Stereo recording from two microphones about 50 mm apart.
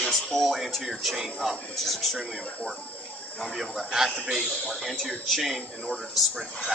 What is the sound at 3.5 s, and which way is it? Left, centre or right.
Speech, centre.